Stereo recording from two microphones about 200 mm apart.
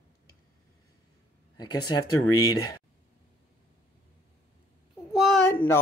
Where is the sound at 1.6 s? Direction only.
20° left (ahead or behind).